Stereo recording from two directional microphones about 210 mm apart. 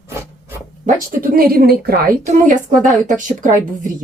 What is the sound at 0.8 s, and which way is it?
A woman's voice, 45° right (ahead or behind).